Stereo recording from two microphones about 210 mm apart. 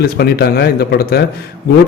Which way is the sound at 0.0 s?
50° left (ahead or behind).